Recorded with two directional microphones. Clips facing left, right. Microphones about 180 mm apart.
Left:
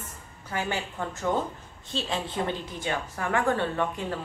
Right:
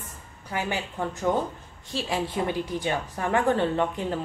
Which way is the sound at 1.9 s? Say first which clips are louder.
Right 2 dB; 10° right (ahead or behind).